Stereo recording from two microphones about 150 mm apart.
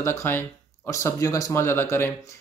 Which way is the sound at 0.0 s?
15° left (ahead or behind).